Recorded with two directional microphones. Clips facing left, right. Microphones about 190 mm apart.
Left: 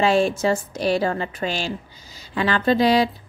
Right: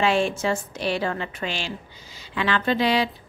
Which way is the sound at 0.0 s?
40° left (ahead or behind).